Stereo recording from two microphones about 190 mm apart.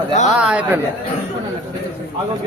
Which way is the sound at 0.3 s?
5° right (ahead or behind).